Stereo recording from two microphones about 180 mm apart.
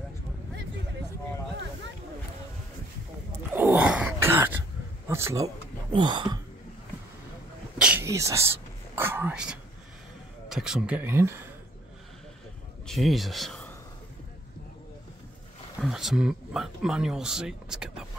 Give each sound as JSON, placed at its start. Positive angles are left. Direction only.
{"t": 3.5, "sound": "a sound", "side_deg": -10}
{"t": 5.0, "sound": "a man's voice", "side_deg": -15}
{"t": 7.8, "sound": "whispering", "side_deg": -10}
{"t": 10.5, "sound": "speech", "side_deg": -5}
{"t": 12.8, "sound": "speech", "side_deg": 0}
{"t": 15.8, "sound": "speech", "side_deg": 0}